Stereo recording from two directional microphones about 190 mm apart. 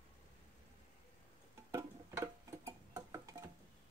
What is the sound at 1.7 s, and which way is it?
Tick-tock, 15° right (ahead or behind).